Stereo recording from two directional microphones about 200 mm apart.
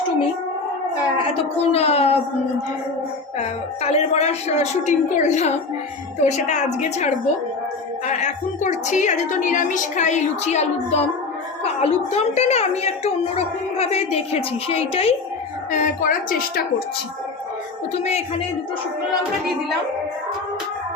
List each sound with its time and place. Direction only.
1.3 s a woman's voice: 30° left (ahead or behind)
3.8 s a woman's voice: 35° left (ahead or behind)
15.7 s a woman's voice: 40° left (ahead or behind)
17.9 s a woman's voice: 35° left (ahead or behind)